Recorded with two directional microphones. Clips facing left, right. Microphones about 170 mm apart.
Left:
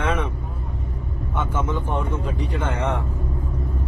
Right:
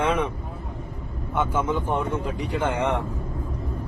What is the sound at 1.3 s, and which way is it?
A man's voice, 10° right (ahead or behind).